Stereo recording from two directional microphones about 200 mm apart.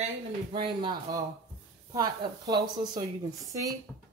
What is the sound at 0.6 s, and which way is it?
Speech, 20° right (ahead or behind).